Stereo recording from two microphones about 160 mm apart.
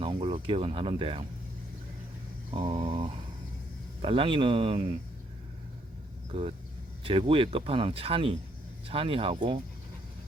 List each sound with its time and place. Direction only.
0.0 s speech: 40° right (ahead or behind)
2.5 s speech: 30° right (ahead or behind)
7.0 s speech: 35° right (ahead or behind)